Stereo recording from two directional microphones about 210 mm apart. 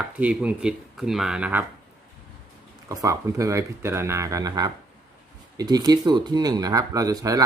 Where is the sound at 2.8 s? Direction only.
15° right (ahead or behind).